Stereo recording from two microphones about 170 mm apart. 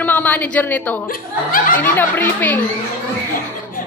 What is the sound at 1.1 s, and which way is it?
Speech, 55° left (ahead or behind).